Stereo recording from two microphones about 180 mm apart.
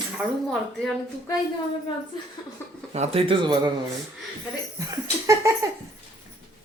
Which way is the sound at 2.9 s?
35° right (ahead or behind).